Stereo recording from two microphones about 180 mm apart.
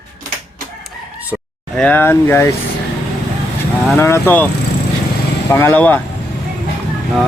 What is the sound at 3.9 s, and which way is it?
Speech, 15° left (ahead or behind).